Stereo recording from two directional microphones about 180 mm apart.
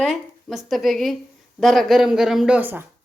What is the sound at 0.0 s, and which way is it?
Speech, centre (ahead or behind).